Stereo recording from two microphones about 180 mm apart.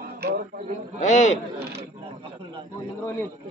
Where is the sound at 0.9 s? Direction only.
40° left (ahead or behind).